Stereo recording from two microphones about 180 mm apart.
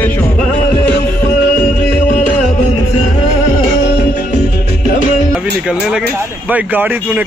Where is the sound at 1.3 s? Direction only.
55° left (ahead or behind).